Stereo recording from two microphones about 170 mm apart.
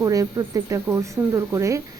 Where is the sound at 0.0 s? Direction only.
20° right (ahead or behind).